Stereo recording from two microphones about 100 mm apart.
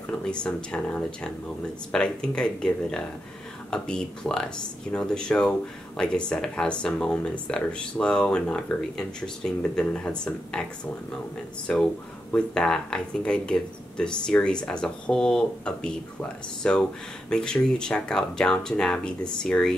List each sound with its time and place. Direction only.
0.2 s speech: 10° left (ahead or behind)
11.7 s speech: 10° left (ahead or behind)